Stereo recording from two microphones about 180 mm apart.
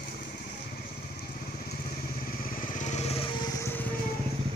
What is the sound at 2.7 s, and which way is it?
Vehicle, 40° left (ahead or behind).